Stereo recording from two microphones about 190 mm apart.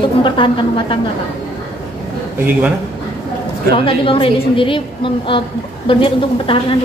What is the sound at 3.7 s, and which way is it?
A woman's voice, 30° left (ahead or behind).